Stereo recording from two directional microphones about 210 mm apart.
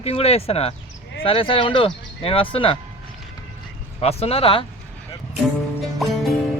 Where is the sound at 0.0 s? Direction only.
30° left (ahead or behind).